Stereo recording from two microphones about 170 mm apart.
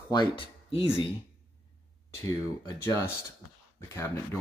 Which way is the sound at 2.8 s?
15° left (ahead or behind).